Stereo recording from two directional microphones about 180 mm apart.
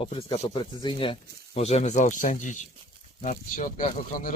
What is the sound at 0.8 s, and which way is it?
Speech, 25° left (ahead or behind).